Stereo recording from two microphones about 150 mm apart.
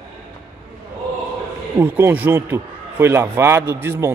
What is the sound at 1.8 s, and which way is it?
A man's voice, 15° right (ahead or behind).